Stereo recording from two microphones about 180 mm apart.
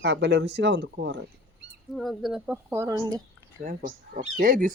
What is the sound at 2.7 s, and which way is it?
Crowing, 15° right (ahead or behind).